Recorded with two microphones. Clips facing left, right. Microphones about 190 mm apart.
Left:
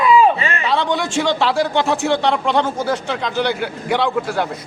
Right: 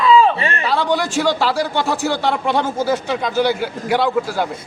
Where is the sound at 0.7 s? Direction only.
Centre (ahead or behind).